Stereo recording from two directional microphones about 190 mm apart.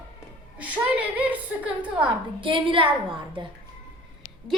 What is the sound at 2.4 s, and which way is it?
Speech, 25° right (ahead or behind).